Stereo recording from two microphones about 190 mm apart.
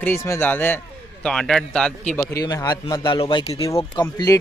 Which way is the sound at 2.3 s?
20° left (ahead or behind).